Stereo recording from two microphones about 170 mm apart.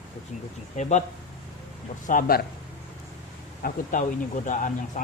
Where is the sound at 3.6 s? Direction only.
60° left (ahead or behind).